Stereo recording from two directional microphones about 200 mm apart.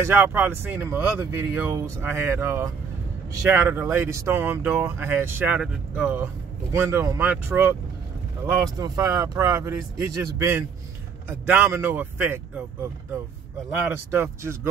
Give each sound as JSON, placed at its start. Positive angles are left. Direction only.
{"t": 0.0, "sound": "speech", "side_deg": -10}
{"t": 13.8, "sound": "speech", "side_deg": -10}